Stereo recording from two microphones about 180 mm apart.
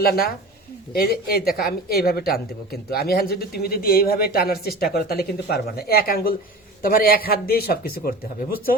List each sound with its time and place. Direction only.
0.0 s a man's voice: 55° left (ahead or behind)